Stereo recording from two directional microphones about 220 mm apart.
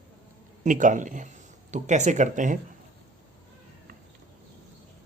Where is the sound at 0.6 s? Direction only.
35° right (ahead or behind).